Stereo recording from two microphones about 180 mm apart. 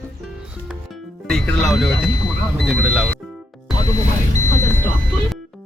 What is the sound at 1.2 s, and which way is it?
Speech, 5° left (ahead or behind).